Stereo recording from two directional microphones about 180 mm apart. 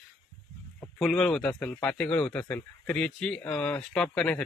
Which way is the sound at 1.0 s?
Centre (ahead or behind).